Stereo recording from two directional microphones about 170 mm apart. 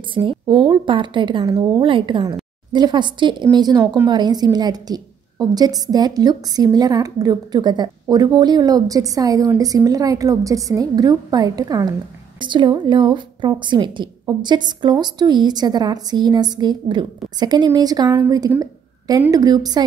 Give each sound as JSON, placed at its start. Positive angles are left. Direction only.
{"t": 0.1, "sound": "a woman's voice", "side_deg": -30}